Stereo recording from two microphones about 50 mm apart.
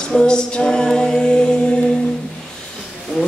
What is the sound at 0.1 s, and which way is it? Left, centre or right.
A capella, centre.